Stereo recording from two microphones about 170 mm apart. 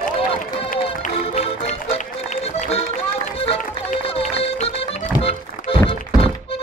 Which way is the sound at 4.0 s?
35° left (ahead or behind).